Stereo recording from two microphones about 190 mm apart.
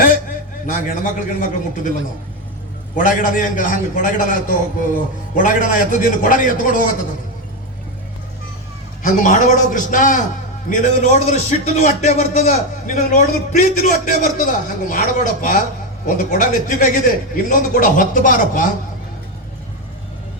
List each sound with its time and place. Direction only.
0.7 s a man's voice: 45° left (ahead or behind)
2.9 s a man's voice: 45° left (ahead or behind)
9.1 s a man's voice: 40° left (ahead or behind)